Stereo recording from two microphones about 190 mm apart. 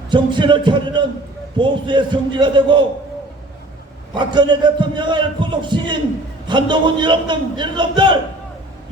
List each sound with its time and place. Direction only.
0.1 s a man's voice: 25° right (ahead or behind)
4.1 s a man's voice: 25° right (ahead or behind)